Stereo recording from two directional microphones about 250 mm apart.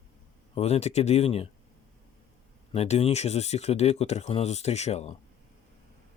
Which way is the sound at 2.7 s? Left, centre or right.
Left.